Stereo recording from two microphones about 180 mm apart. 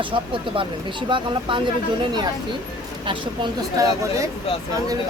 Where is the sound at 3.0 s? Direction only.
20° right (ahead or behind).